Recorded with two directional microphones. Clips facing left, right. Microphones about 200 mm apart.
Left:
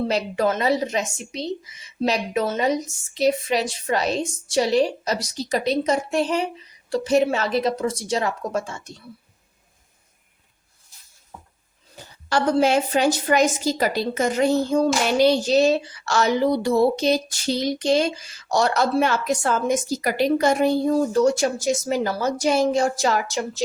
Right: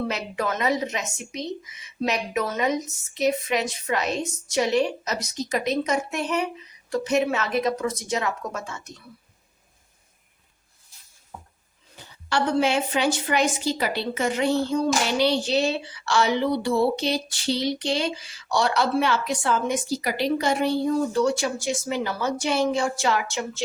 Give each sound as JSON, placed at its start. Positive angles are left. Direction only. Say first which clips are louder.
{"t": 0.1, "sound": "speech", "louder": "left 6 dB", "side_deg": 35}
{"t": 11.9, "sound": "a woman's voice", "louder": "left 2 dB", "side_deg": 40}